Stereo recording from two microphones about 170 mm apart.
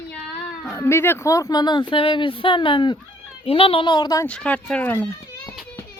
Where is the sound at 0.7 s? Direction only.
15° left (ahead or behind).